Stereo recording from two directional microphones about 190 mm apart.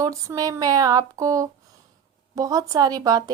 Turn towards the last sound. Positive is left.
turn(degrees=-20)  # may be behind; listen again after turning